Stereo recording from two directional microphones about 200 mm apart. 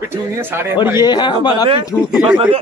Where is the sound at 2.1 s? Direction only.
5° right (ahead or behind).